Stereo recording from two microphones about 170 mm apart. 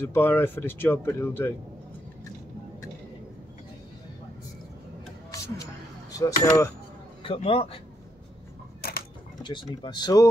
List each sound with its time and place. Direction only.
0.0 s speech: 10° left (ahead or behind)
6.1 s speech: 20° left (ahead or behind)
7.2 s a man's voice: 35° left (ahead or behind)
9.4 s speech: 25° left (ahead or behind)